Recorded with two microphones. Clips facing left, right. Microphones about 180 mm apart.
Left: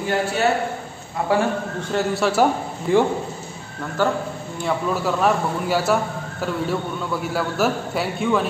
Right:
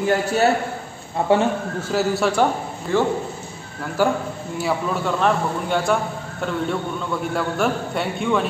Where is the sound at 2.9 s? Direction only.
15° left (ahead or behind).